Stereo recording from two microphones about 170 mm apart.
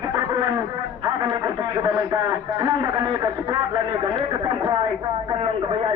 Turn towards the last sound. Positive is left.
turn(degrees=-30)  # may be behind; listen again after turning